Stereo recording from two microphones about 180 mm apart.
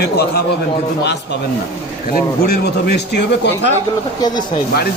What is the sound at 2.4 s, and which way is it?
Speech, 65° left (ahead or behind).